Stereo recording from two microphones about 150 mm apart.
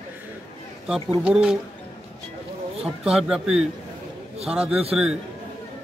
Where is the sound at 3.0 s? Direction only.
5° right (ahead or behind).